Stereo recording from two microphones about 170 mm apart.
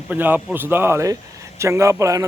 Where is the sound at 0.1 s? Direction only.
10° right (ahead or behind).